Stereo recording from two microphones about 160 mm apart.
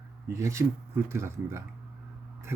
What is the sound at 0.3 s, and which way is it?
A man's voice, 20° right (ahead or behind).